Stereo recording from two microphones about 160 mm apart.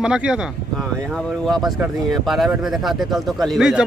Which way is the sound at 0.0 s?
5° right (ahead or behind).